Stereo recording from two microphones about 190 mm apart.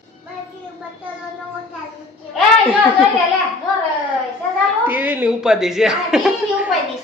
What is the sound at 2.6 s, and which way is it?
Speech, 10° right (ahead or behind).